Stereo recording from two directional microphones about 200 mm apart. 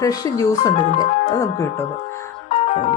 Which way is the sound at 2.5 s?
35° left (ahead or behind).